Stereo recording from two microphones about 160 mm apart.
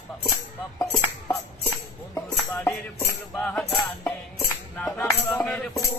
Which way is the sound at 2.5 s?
10° left (ahead or behind).